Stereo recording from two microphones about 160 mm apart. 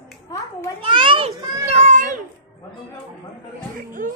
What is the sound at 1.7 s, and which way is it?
Children playing, 50° right (ahead or behind).